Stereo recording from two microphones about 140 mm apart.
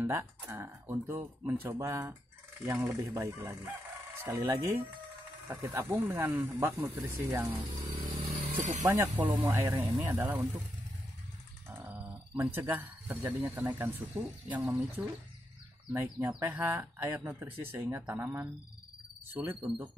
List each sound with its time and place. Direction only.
0.0 s speech: 20° right (ahead or behind)
8.3 s a sound: 60° right (ahead or behind)
8.8 s speech: 15° right (ahead or behind)
11.7 s dog: 15° right (ahead or behind)
13.2 s speech: 15° right (ahead or behind)